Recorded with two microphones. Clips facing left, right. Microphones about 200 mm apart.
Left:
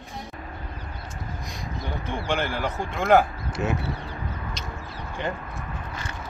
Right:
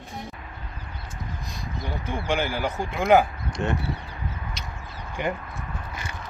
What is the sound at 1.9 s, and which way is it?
Speech, centre (ahead or behind).